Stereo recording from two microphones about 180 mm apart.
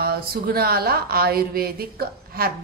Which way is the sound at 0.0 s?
55° right (ahead or behind).